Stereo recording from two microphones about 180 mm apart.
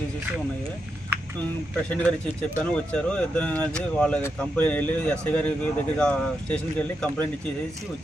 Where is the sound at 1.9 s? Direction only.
10° left (ahead or behind).